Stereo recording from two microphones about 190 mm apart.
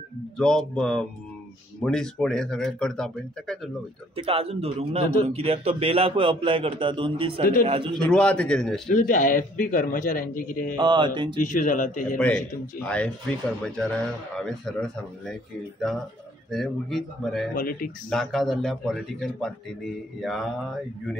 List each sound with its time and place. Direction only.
0.4 s speech: 5° left (ahead or behind)
4.2 s a man's voice: 30° right (ahead or behind)
8.1 s speech: 5° left (ahead or behind)
8.9 s a man's voice: 45° left (ahead or behind)
10.8 s a man's voice: 25° right (ahead or behind)
11.4 s a man's voice: 45° left (ahead or behind)
12.2 s speech: 5° left (ahead or behind)
16.4 s speech: centre (ahead or behind)
17.6 s a man's voice: 50° left (ahead or behind)
18.1 s speech: centre (ahead or behind)